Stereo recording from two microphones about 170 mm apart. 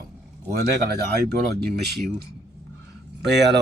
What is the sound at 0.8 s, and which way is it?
Speech, 65° right (ahead or behind).